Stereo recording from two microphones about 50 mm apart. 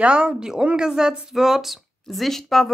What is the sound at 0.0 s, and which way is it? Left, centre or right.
A woman's voice, centre.